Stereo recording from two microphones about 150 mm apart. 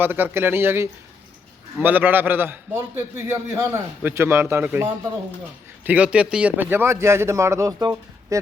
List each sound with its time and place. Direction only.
0.0 s a man's voice: 15° right (ahead or behind)